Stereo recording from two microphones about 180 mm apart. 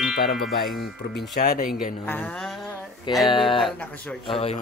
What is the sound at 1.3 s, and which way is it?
Speech, 55° left (ahead or behind).